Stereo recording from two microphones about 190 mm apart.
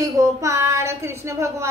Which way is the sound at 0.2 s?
15° right (ahead or behind).